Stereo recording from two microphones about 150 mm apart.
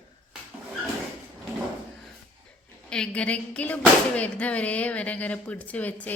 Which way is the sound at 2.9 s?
5° left (ahead or behind).